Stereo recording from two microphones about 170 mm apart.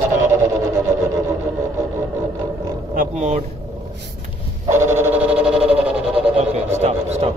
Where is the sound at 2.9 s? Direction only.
40° right (ahead or behind).